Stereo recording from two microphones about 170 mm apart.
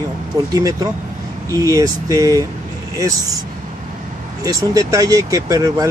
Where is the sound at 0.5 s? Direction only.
20° right (ahead or behind).